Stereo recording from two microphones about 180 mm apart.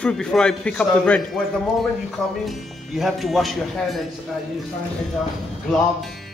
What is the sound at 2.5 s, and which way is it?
A man's voice, centre (ahead or behind).